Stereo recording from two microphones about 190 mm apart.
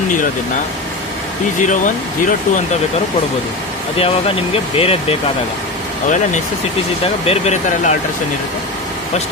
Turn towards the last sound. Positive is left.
turn(degrees=40)  # may be behind; listen again after turning